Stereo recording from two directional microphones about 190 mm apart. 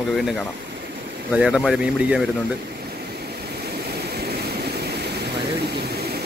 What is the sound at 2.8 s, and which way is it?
Vehicle, 55° right (ahead or behind).